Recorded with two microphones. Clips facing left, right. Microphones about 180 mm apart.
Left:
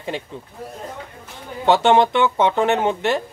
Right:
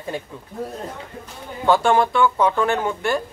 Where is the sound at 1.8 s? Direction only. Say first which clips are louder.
Left 2 dB; 25° left (ahead or behind).